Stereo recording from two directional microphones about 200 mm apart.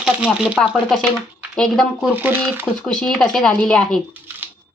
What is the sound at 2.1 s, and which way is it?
Speech, 10° right (ahead or behind).